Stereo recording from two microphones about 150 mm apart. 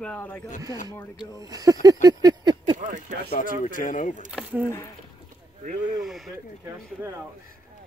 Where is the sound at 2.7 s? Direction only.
55° right (ahead or behind).